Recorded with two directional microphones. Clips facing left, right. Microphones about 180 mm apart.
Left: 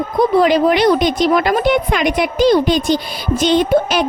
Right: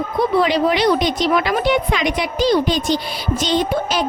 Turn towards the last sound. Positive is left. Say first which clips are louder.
# left 5 dB
turn(degrees=60)  # may be behind; listen again after turning